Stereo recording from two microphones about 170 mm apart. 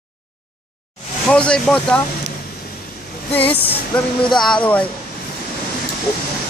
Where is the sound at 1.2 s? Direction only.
5° left (ahead or behind).